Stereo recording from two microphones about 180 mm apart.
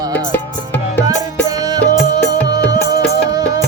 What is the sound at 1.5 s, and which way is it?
Music, 20° right (ahead or behind).